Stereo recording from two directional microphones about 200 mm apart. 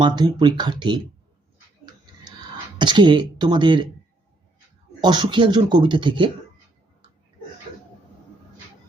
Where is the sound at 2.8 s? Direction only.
25° right (ahead or behind).